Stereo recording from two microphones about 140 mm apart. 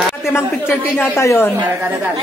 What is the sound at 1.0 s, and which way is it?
Speech, 20° left (ahead or behind).